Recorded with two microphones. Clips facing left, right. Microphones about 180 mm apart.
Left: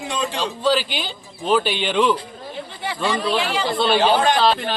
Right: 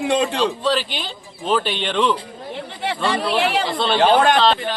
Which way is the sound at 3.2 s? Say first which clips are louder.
Right 4 dB; 65° right (ahead or behind).